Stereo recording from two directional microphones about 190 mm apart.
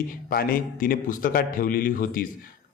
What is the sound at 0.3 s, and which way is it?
A man's voice, 50° left (ahead or behind).